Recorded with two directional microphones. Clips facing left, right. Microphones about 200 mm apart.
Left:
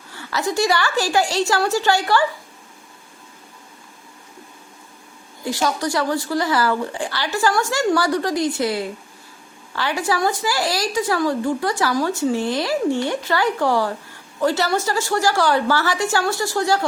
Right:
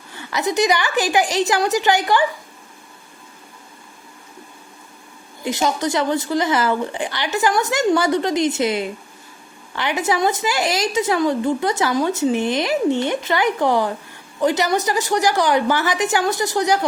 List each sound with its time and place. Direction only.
0.1 s a woman's voice: 20° right (ahead or behind)
5.4 s a woman's voice: 20° right (ahead or behind)